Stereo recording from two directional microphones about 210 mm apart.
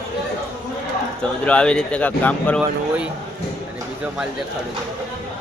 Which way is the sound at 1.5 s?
5° left (ahead or behind).